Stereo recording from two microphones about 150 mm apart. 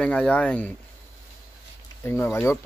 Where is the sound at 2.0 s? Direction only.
15° left (ahead or behind).